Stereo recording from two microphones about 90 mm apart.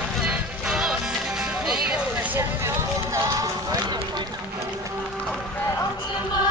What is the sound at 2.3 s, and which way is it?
Music, 30° right (ahead or behind).